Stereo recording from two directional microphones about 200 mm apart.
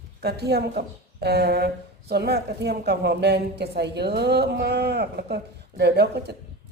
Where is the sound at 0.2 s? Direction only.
55° right (ahead or behind).